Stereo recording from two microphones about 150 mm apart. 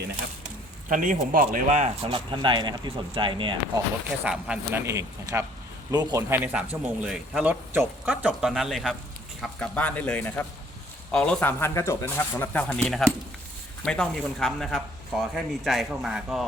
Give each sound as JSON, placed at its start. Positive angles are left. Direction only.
{"t": 0.9, "sound": "speech", "side_deg": -60}
{"t": 2.0, "sound": "speech", "side_deg": -35}
{"t": 4.2, "sound": "speech", "side_deg": -10}
{"t": 4.9, "sound": "speech", "side_deg": -20}
{"t": 6.3, "sound": "speech", "side_deg": -10}